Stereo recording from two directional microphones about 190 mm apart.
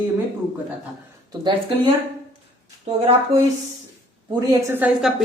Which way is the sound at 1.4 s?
25° right (ahead or behind).